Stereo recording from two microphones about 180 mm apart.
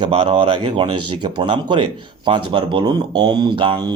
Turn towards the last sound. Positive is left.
turn(degrees=-30)  # may be behind; listen again after turning